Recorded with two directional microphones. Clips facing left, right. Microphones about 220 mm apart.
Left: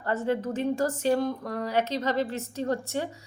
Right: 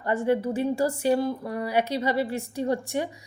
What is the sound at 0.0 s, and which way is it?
A woman's voice, 15° right (ahead or behind).